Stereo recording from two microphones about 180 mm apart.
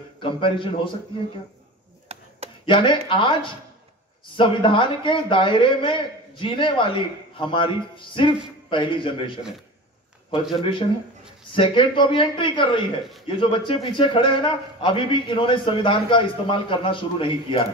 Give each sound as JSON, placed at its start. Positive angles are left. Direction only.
{"t": 0.2, "sound": "a man's voice", "side_deg": 30}
{"t": 2.1, "sound": "chopping", "side_deg": -35}
{"t": 2.6, "sound": "a man's voice", "side_deg": 30}
{"t": 10.5, "sound": "a man's voice", "side_deg": 30}